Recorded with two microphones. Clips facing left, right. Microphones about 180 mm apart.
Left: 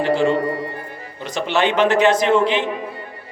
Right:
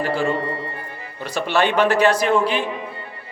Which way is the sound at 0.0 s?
20° left (ahead or behind).